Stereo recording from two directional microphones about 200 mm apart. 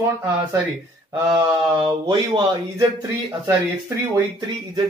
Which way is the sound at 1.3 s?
15° right (ahead or behind).